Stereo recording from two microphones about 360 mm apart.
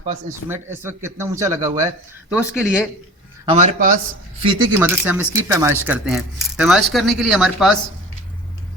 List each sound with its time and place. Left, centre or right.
0.0 s a man's voice: right
0.4 s speech: centre
3.5 s a man's voice: right
4.4 s speech: centre